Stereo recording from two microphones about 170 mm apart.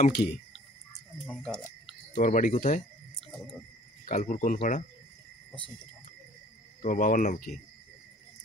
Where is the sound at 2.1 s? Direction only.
50° left (ahead or behind).